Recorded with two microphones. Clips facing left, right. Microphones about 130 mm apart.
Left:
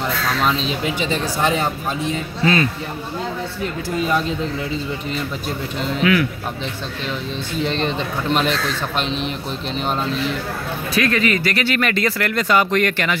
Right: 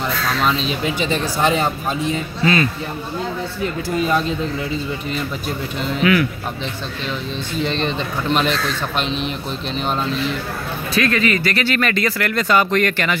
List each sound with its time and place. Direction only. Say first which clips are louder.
2.4 s speech: even; 25° left (ahead or behind)
5.9 s a man's voice: right 1 dB; 5° right (ahead or behind)
7.8 s a man's voice: even; 5° left (ahead or behind)
11.0 s speech: right 1 dB; 20° left (ahead or behind)
11.9 s speech: even; 25° left (ahead or behind)
12.4 s speech: right 1 dB; 15° left (ahead or behind)